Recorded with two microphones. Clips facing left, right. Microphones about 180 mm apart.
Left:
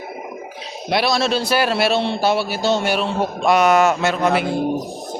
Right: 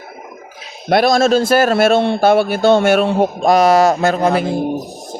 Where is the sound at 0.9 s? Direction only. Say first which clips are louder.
Right 7 dB; 50° right (ahead or behind).